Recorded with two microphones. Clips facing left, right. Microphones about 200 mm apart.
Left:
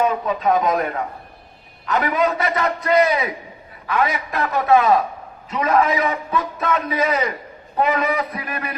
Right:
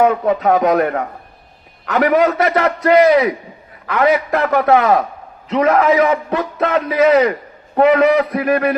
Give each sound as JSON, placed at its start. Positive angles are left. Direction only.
{"t": 0.0, "sound": "a man's voice", "side_deg": -65}
{"t": 5.5, "sound": "a man's voice", "side_deg": -90}